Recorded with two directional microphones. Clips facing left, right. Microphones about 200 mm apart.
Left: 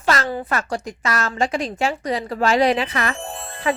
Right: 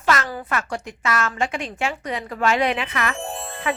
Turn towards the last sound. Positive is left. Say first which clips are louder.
# right 2 dB
turn(degrees=0)  # may be behind; listen again after turning